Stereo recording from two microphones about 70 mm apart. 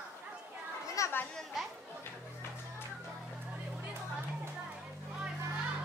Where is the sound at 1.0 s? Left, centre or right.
Left.